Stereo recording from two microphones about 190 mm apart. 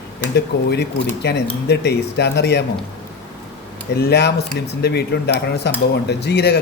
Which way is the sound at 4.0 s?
60° left (ahead or behind).